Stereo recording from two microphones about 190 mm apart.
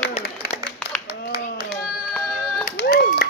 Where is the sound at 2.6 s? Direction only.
50° left (ahead or behind).